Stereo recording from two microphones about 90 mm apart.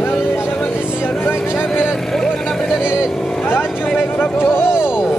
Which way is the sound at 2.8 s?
25° left (ahead or behind).